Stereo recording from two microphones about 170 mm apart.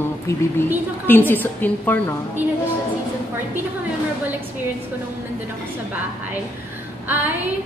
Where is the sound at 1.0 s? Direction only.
10° left (ahead or behind).